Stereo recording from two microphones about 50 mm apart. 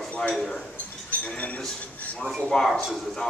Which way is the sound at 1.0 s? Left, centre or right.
Left.